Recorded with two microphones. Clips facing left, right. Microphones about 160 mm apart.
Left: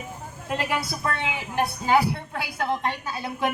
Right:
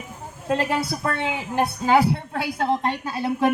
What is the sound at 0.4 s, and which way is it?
A woman's voice, 35° right (ahead or behind).